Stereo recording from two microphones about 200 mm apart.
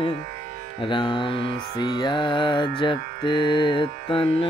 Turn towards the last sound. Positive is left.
turn(degrees=25)  # may be behind; listen again after turning